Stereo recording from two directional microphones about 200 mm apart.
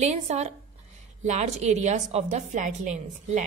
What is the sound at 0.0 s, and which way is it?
A woman's voice, 35° right (ahead or behind).